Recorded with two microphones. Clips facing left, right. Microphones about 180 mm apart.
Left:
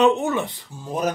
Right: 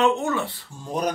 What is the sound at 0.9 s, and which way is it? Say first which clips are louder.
Speech: left 1 dB; 5° left (ahead or behind).